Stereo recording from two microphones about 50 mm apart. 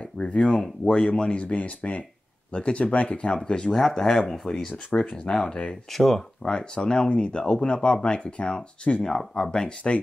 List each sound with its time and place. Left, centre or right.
0.4 s speech: centre
1.4 s speech: left
3.7 s speech: centre
5.9 s speech: centre